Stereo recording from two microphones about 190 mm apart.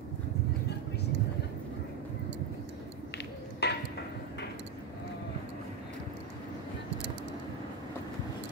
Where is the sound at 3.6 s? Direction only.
60° left (ahead or behind).